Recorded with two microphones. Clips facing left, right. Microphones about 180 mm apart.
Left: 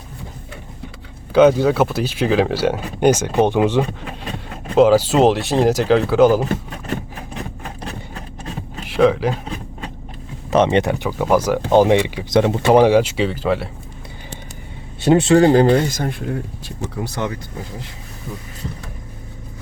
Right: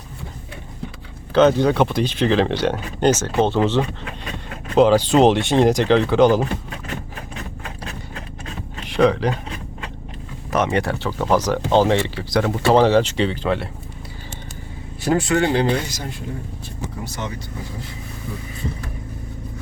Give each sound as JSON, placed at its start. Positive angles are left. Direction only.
{"t": 1.3, "sound": "speech", "side_deg": 10}
{"t": 8.9, "sound": "speech", "side_deg": 5}
{"t": 10.5, "sound": "speech", "side_deg": 25}
{"t": 15.0, "sound": "speech", "side_deg": 25}
{"t": 16.6, "sound": "speech", "side_deg": 90}